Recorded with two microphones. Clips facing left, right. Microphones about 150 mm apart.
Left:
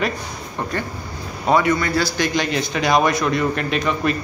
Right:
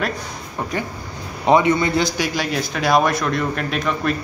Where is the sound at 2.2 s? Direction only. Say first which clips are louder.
Left 2 dB; 5° right (ahead or behind).